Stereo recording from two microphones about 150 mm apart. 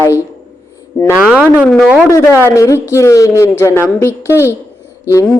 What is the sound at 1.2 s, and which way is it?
Speech, 5° right (ahead or behind).